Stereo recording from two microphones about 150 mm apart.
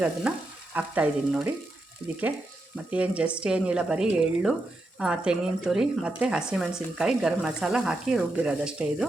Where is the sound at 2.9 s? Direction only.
10° right (ahead or behind).